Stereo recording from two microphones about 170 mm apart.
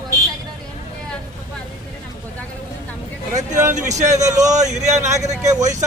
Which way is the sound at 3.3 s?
45° right (ahead or behind).